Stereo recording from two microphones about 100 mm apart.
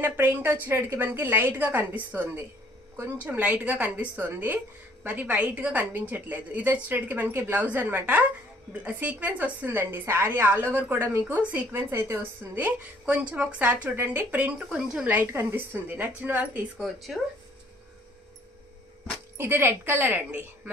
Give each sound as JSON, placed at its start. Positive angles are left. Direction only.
{"t": 0.0, "sound": "a woman's voice", "side_deg": -20}
{"t": 16.7, "sound": "speech", "side_deg": 0}
{"t": 19.3, "sound": "a woman's voice", "side_deg": -25}